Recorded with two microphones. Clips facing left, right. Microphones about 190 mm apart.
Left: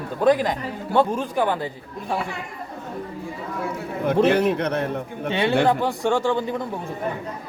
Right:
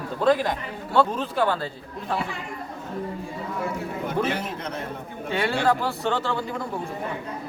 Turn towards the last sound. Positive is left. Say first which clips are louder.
# left 5 dB
turn(degrees=15)  # may be behind; listen again after turning